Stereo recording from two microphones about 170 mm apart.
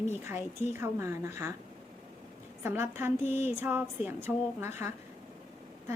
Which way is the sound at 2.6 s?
15° right (ahead or behind).